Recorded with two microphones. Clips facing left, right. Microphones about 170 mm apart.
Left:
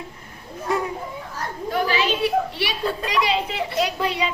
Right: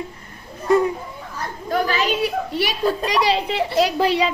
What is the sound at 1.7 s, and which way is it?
A woman's voice, 45° right (ahead or behind).